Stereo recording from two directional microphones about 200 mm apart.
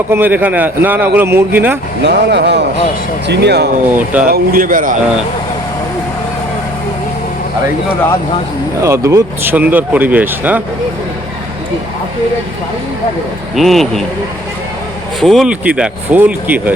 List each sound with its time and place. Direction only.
0.1 s speech: 10° right (ahead or behind)
2.0 s speech: 60° right (ahead or behind)
3.9 s speech: 5° right (ahead or behind)
4.3 s speech: 45° right (ahead or behind)
8.8 s speech: 15° right (ahead or behind)
13.6 s speech: centre (ahead or behind)
15.2 s speech: centre (ahead or behind)